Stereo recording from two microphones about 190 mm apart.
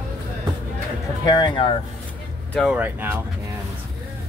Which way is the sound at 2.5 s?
Centre (ahead or behind).